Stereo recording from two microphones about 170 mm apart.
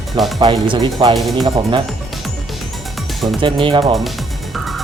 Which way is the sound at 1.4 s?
25° right (ahead or behind).